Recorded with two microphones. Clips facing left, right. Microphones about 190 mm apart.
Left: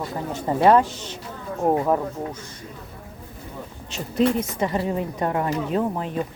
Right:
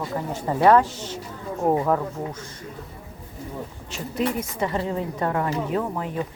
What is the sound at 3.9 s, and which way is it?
A woman's voice, 25° left (ahead or behind).